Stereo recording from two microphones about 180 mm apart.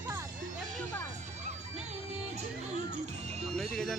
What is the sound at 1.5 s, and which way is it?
Music, 40° right (ahead or behind).